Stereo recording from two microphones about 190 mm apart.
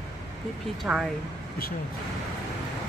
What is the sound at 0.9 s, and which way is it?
Speech, 5° right (ahead or behind).